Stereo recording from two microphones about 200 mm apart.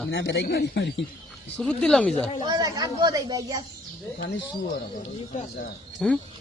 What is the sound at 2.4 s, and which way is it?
Speech, 20° right (ahead or behind).